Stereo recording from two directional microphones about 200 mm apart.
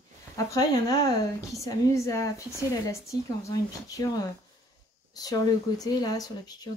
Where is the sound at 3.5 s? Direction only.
15° left (ahead or behind).